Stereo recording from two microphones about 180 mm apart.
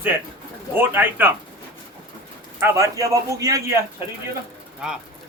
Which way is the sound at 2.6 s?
15° right (ahead or behind).